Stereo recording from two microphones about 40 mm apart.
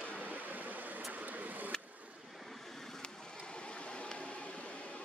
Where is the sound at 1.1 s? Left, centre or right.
Right.